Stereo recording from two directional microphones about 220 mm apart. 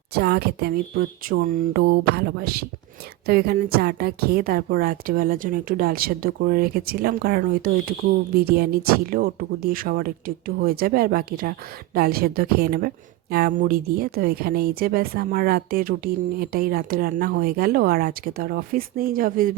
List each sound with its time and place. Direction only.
0.1 s a woman's voice: 45° right (ahead or behind)